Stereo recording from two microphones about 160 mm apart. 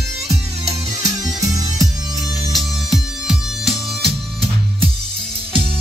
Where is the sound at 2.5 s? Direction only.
Centre (ahead or behind).